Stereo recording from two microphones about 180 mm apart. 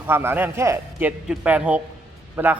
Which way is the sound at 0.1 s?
10° right (ahead or behind).